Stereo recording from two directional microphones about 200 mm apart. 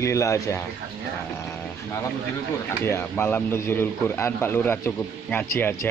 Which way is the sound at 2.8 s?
10° left (ahead or behind).